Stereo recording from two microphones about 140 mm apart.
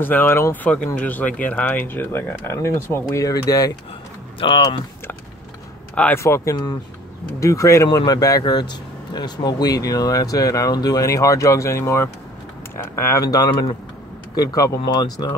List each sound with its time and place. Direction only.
0.0 s speech: 15° left (ahead or behind)
5.9 s speech: 15° left (ahead or behind); by 15.0 s 30° left (ahead or behind)